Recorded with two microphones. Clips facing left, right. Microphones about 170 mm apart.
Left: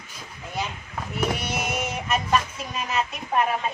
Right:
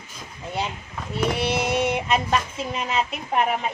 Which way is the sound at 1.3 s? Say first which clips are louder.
Right 6 dB; 30° right (ahead or behind).